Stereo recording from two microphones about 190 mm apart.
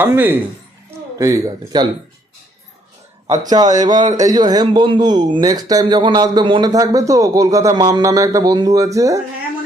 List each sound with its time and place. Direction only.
0.0 s a man's voice: 10° right (ahead or behind)
3.3 s a man's voice: 20° right (ahead or behind)